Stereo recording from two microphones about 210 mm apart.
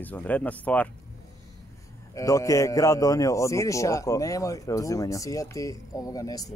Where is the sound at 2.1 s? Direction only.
15° left (ahead or behind).